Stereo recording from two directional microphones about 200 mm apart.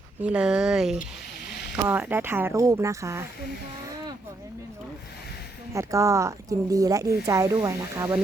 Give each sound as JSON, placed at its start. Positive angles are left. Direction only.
{"t": 0.2, "sound": "speech", "side_deg": -5}
{"t": 5.7, "sound": "speech", "side_deg": -15}